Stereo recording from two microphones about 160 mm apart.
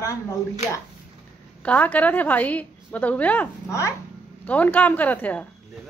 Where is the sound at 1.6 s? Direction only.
10° left (ahead or behind).